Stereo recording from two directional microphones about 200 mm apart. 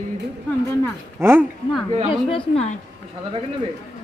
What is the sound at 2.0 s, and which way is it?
Speech, 25° left (ahead or behind).